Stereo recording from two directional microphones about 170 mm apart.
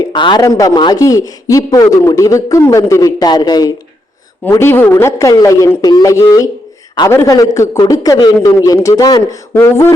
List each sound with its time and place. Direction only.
0.0 s a man's voice: 25° left (ahead or behind)